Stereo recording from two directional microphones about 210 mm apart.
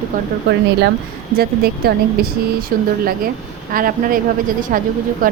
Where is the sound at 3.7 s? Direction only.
40° right (ahead or behind).